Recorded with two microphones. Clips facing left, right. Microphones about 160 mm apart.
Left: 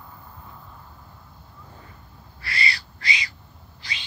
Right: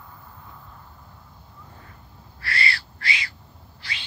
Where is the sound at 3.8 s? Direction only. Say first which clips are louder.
Even; 20° left (ahead or behind).